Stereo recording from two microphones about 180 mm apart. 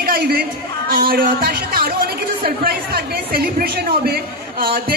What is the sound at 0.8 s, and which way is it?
A woman's voice, 55° right (ahead or behind).